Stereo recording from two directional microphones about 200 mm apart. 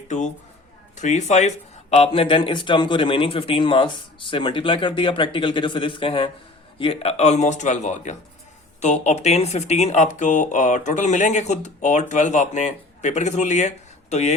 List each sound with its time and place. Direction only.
0.9 s a man's voice: 35° left (ahead or behind)